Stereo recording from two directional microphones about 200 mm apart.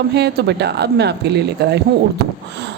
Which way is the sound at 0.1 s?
55° right (ahead or behind).